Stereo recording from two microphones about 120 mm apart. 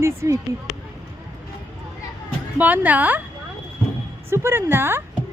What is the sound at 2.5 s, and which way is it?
Speech, 15° right (ahead or behind).